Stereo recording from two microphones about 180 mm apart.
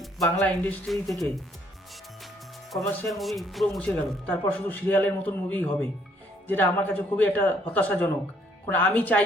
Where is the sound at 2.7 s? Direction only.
Centre (ahead or behind).